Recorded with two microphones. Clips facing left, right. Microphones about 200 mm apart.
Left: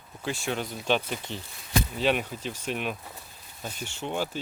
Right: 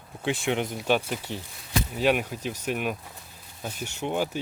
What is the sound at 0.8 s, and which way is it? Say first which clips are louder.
Speech: right 1 dB; 10° right (ahead or behind).